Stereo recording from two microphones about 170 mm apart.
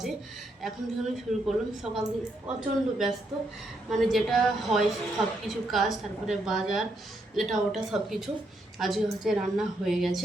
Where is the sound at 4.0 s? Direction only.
Centre (ahead or behind).